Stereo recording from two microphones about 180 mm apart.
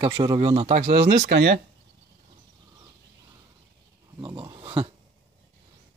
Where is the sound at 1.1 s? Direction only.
70° right (ahead or behind).